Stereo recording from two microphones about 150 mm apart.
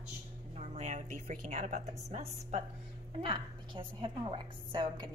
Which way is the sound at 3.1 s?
35° right (ahead or behind).